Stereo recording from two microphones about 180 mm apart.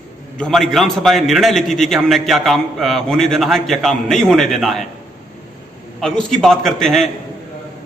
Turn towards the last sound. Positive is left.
turn(degrees=0)  # may be behind; listen again after turning